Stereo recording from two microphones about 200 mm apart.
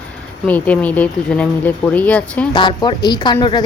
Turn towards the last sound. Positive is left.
turn(degrees=20)  # may be behind; listen again after turning